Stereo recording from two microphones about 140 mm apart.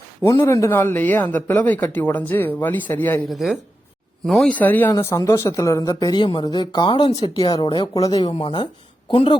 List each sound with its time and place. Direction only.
0.2 s speech: 15° left (ahead or behind)
3.2 s speech: centre (ahead or behind); by 9.4 s 40° left (ahead or behind)